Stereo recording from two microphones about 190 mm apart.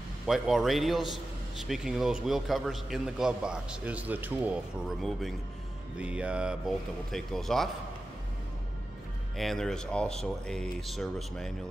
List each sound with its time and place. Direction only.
0.3 s a man's voice: centre (ahead or behind)
9.4 s a man's voice: centre (ahead or behind)